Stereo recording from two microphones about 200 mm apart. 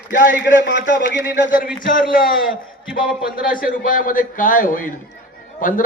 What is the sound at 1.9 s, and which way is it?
Speech, 45° left (ahead or behind).